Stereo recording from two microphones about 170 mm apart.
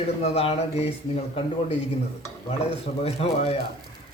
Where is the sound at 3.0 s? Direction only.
35° left (ahead or behind).